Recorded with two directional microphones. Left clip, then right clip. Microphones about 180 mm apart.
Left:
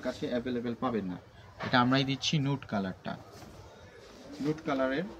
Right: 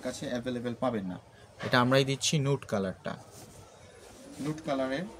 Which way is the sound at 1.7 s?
75° right (ahead or behind).